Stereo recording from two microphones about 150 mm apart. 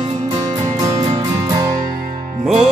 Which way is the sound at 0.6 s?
20° right (ahead or behind).